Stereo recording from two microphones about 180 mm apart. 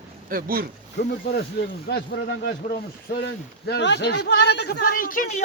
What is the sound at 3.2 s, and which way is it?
A man's voice, 70° left (ahead or behind).